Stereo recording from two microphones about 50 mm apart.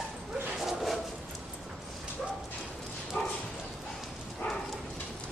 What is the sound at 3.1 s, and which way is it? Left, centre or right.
Dog, left.